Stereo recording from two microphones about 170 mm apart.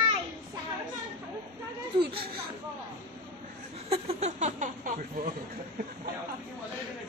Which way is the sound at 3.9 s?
40° right (ahead or behind).